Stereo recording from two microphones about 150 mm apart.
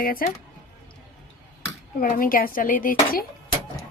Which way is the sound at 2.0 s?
70° left (ahead or behind).